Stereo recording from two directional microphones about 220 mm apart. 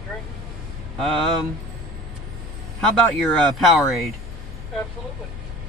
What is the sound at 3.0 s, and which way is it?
Speech, centre (ahead or behind).